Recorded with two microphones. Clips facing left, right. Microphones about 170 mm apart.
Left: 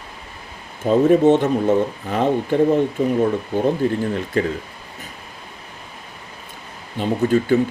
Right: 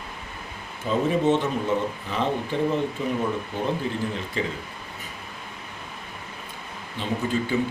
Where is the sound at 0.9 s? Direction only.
50° left (ahead or behind).